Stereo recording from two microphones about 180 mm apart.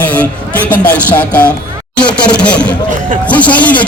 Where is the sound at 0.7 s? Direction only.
10° left (ahead or behind).